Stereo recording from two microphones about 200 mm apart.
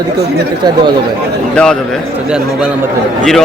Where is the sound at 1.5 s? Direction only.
5° left (ahead or behind).